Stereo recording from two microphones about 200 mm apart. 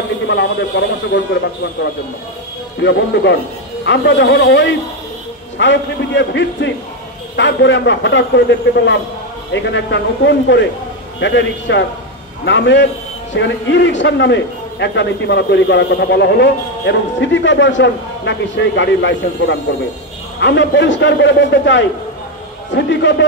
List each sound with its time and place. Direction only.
0.3 s a man's voice: 60° left (ahead or behind)